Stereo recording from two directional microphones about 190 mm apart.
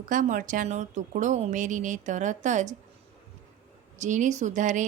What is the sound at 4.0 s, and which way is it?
Speech, 40° right (ahead or behind).